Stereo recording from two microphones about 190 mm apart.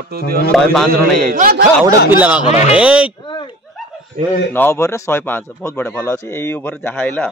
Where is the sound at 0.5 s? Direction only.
5° left (ahead or behind).